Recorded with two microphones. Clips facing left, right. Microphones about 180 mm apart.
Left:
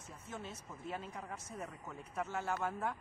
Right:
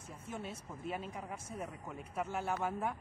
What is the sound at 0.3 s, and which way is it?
Speech, 10° right (ahead or behind).